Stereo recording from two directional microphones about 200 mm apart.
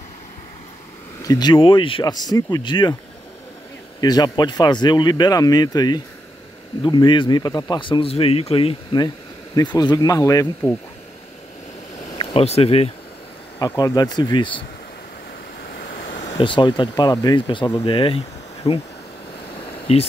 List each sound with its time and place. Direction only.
1.2 s speech: 20° left (ahead or behind)
4.0 s speech: 20° left (ahead or behind)
12.1 s speech: 25° left (ahead or behind)
13.6 s speech: 15° left (ahead or behind)
15.6 s waves: 45° left (ahead or behind)
16.3 s speech: 25° left (ahead or behind)
19.9 s speech: 30° left (ahead or behind)